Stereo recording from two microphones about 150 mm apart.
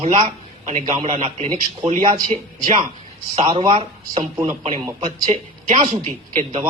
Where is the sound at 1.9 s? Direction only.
60° right (ahead or behind).